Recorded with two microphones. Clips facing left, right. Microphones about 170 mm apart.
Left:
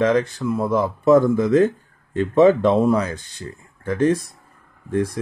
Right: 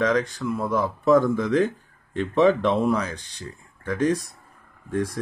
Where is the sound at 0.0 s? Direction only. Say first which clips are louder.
Left 4 dB; 25° left (ahead or behind).